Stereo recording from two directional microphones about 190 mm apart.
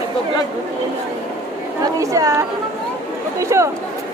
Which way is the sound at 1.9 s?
15° right (ahead or behind).